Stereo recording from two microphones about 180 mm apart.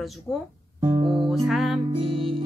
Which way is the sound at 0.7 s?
20° right (ahead or behind).